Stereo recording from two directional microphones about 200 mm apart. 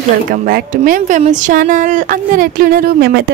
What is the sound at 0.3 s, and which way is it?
Speech, 45° right (ahead or behind).